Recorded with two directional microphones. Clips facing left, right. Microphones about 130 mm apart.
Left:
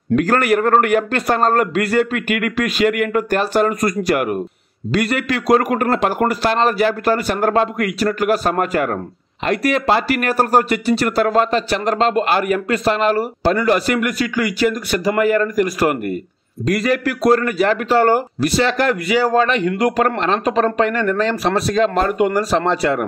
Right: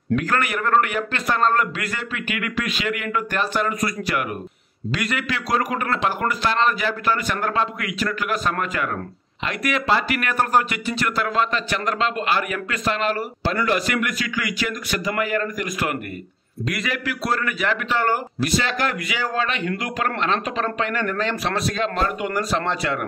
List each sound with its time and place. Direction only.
0.1 s speech: 45° left (ahead or behind)
1.2 s speech: 40° left (ahead or behind)